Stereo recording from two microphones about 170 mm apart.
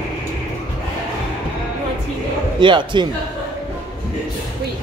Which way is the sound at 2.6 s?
30° right (ahead or behind).